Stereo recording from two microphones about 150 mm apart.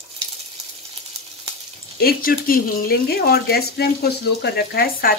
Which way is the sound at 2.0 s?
80° left.